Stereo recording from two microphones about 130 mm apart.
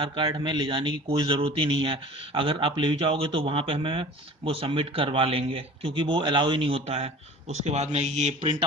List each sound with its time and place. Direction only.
0.0 s a man's voice: 35° right (ahead or behind); by 8.4 s 60° right (ahead or behind)
8.4 s a man's voice: 40° right (ahead or behind)